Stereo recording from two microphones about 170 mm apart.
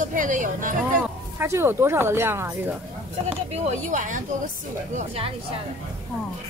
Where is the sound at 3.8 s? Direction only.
45° right (ahead or behind).